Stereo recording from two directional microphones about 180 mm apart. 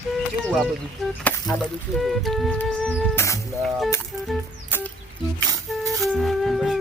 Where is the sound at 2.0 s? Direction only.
Centre (ahead or behind).